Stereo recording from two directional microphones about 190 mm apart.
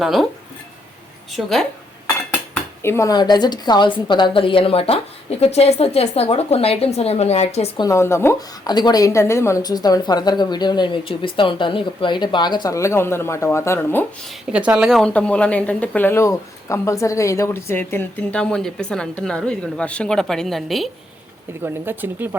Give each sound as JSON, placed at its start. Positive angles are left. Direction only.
{"t": 0.0, "sound": "a woman's voice", "side_deg": 0}
{"t": 1.3, "sound": "a woman's voice", "side_deg": 0}
{"t": 2.8, "sound": "a woman's voice", "side_deg": 15}
{"t": 7.8, "sound": "a woman's voice", "side_deg": 15}
{"t": 14.5, "sound": "a woman's voice", "side_deg": -5}
{"t": 21.6, "sound": "speech", "side_deg": -10}